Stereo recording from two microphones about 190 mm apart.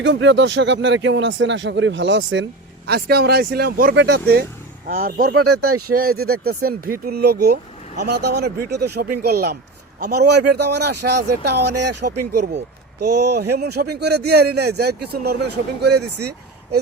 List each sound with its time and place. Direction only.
0.0 s speech: 70° right (ahead or behind)
4.9 s speech: 50° right (ahead or behind)